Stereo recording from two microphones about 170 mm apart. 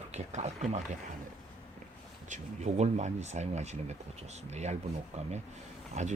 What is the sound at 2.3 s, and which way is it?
Speech, 40° right (ahead or behind).